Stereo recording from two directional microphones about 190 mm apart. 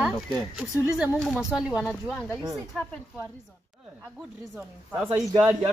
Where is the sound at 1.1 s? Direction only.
5° left (ahead or behind).